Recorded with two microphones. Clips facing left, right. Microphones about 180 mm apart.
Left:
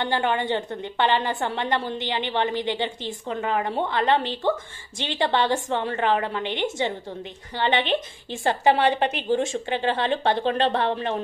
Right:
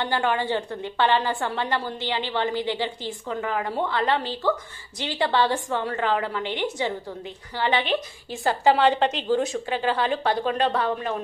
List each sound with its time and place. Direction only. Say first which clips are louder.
0.0 s a woman's voice: even; 20° left (ahead or behind)